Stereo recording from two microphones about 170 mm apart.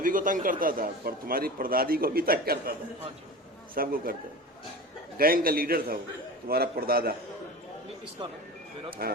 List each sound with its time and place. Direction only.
0.0 s a man's voice: 55° right (ahead or behind)
3.8 s a man's voice: 60° right (ahead or behind)
5.1 s a man's voice: 60° right (ahead or behind)
8.9 s a man's voice: 60° right (ahead or behind)